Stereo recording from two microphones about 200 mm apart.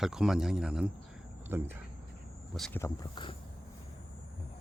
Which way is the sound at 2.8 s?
25° left (ahead or behind).